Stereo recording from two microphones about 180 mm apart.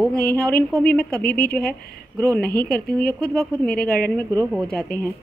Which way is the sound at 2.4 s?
55° left (ahead or behind).